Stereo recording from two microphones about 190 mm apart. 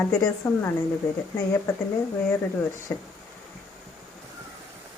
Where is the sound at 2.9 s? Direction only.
10° left (ahead or behind).